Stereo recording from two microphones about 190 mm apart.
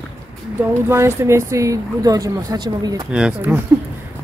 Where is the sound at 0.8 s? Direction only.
15° right (ahead or behind).